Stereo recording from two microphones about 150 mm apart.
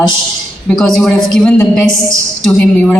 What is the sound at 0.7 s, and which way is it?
A woman's voice, 5° left (ahead or behind).